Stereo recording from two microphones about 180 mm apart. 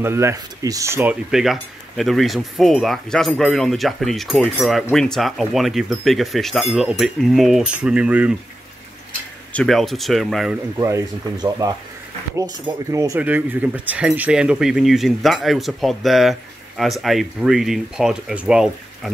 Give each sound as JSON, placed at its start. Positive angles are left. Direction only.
{"t": 0.0, "sound": "speech", "side_deg": -15}
{"t": 1.3, "sound": "speech", "side_deg": 0}
{"t": 9.5, "sound": "speech", "side_deg": 5}
{"t": 10.8, "sound": "speech", "side_deg": -15}